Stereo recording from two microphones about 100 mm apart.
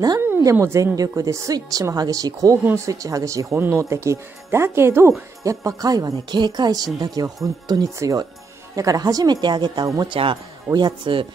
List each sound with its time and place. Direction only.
0.6 s speech: 25° right (ahead or behind)
0.9 s speech: 35° right (ahead or behind)
8.0 s speech: 35° right (ahead or behind); by 11.2 s 55° right (ahead or behind)